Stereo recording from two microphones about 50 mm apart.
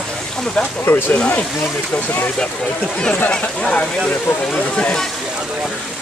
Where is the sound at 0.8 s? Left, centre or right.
Left.